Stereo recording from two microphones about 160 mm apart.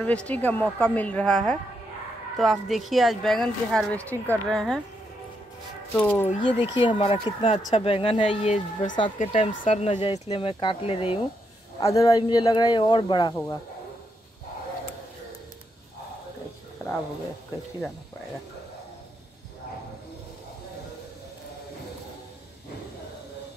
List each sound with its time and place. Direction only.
0.0 s a woman's voice: 10° left (ahead or behind)
5.9 s speech: 10° left (ahead or behind)
6.4 s speech: 30° left (ahead or behind)
11.8 s speech: 20° left (ahead or behind)